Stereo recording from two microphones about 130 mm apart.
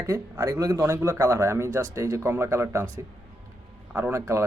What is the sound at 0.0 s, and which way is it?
Speech, 25° right (ahead or behind).